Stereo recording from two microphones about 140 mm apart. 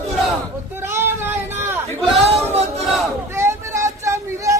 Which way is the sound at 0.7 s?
15° right (ahead or behind).